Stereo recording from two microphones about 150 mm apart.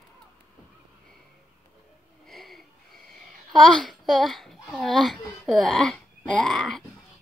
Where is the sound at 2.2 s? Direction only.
Centre (ahead or behind).